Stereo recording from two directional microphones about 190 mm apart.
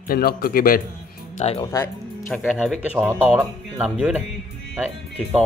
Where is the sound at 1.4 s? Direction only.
30° left (ahead or behind).